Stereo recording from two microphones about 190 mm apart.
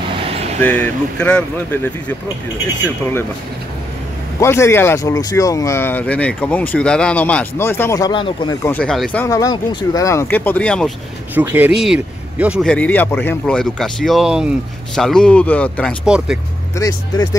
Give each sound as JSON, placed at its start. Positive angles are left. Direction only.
{"t": 0.6, "sound": "speech", "side_deg": 10}
{"t": 4.4, "sound": "speech", "side_deg": 15}
{"t": 8.6, "sound": "speech", "side_deg": 5}
{"t": 11.3, "sound": "speech", "side_deg": -10}
{"t": 12.6, "sound": "speech", "side_deg": 5}
{"t": 16.7, "sound": "speech", "side_deg": 20}